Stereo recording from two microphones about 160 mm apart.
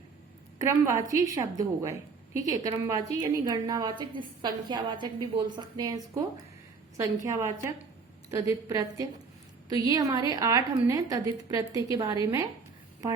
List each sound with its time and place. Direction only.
0.6 s a woman's voice: 20° right (ahead or behind)
7.3 s a woman's voice: 20° right (ahead or behind)